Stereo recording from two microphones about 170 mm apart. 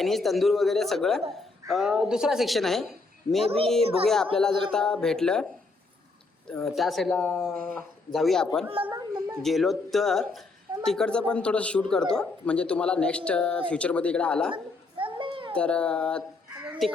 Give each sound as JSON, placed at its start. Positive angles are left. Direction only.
{"t": 0.0, "sound": "a woman's voice", "side_deg": 0}
{"t": 3.4, "sound": "speech", "side_deg": -35}
{"t": 4.4, "sound": "a woman's voice", "side_deg": 5}
{"t": 6.5, "sound": "a woman's voice", "side_deg": 0}
{"t": 9.0, "sound": "a child's voice", "side_deg": -20}
{"t": 9.4, "sound": "a woman's voice", "side_deg": 0}
{"t": 14.5, "sound": "a sound", "side_deg": -30}
{"t": 15.5, "sound": "speech", "side_deg": 5}
{"t": 16.6, "sound": "chicken", "side_deg": 0}